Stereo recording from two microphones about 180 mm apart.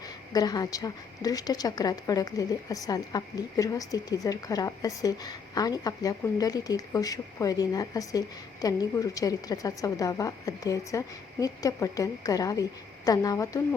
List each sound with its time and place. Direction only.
0.3 s a woman's voice: 20° left (ahead or behind)